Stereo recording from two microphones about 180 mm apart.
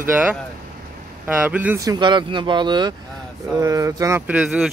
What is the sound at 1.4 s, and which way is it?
Speech, 10° right (ahead or behind).